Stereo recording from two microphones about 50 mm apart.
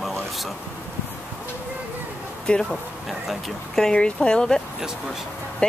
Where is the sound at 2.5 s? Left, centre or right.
Left.